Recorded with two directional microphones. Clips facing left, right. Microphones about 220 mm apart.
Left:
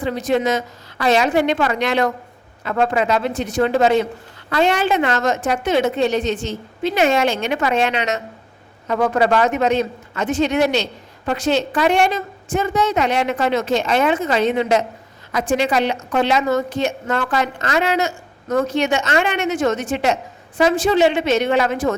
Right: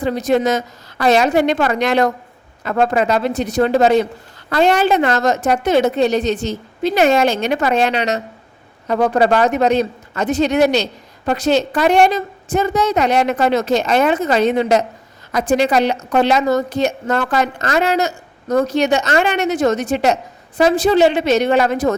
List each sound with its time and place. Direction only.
0.0 s a woman's voice: 40° right (ahead or behind)